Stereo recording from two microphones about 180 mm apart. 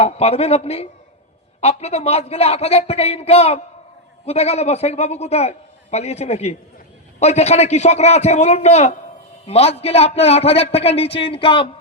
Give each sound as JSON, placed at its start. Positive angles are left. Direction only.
{"t": 0.0, "sound": "a man's voice", "side_deg": 35}